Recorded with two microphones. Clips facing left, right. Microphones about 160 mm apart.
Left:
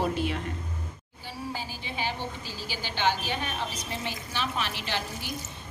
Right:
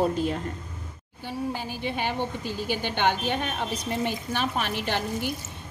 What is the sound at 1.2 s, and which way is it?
A woman's voice, 60° right (ahead or behind).